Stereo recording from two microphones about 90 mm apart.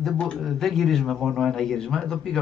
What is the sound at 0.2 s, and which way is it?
Speech, 5° left (ahead or behind).